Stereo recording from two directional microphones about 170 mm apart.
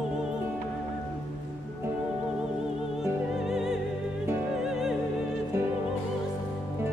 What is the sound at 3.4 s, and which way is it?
Music, 5° right (ahead or behind).